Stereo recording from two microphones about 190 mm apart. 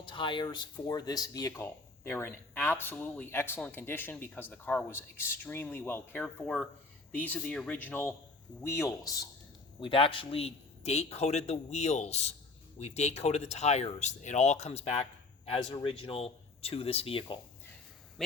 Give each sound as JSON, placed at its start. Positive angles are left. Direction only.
{"t": 0.0, "sound": "speech", "side_deg": 25}
{"t": 9.8, "sound": "a man's voice", "side_deg": 25}